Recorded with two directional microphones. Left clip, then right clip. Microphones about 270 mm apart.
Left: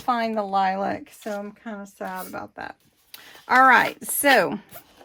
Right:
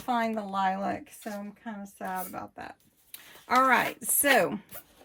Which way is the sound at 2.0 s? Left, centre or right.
Left.